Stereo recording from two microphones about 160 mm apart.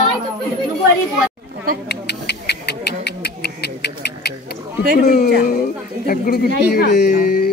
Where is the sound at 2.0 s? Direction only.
90° left.